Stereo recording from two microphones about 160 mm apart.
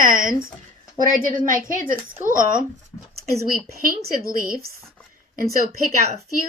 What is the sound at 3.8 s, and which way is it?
Speech, 60° right (ahead or behind).